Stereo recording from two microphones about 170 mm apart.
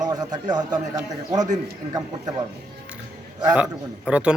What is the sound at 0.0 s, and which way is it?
A man's voice, 25° right (ahead or behind).